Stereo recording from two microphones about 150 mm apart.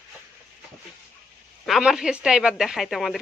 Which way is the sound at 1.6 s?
Centre (ahead or behind).